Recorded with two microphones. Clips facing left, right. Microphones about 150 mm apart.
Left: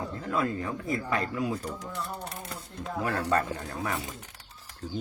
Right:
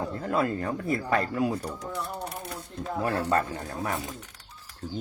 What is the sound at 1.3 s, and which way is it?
Speech, 50° right (ahead or behind).